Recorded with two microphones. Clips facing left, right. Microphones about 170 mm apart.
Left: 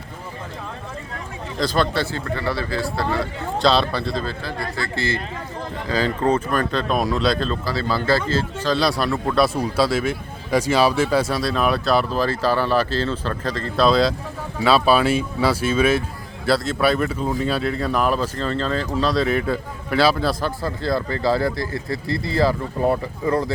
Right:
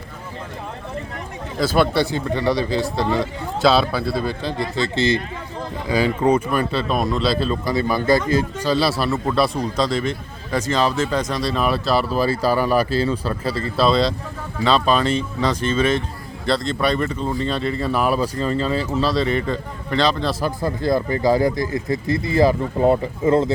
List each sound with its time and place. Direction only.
1.5 s a man's voice: 5° right (ahead or behind)
3.6 s a man's voice: 5° right (ahead or behind)
7.6 s speech: 20° right (ahead or behind); by 20.3 s 5° left (ahead or behind)
20.4 s speech: 15° right (ahead or behind)